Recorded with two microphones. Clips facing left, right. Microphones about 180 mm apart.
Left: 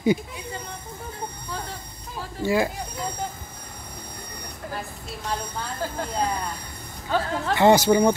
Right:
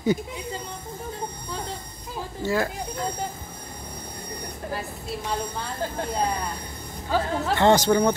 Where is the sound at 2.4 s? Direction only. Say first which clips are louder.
Left 3 dB; 10° left (ahead or behind).